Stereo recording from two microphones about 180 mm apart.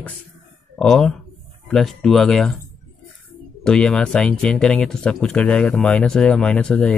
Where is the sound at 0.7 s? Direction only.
5° left (ahead or behind).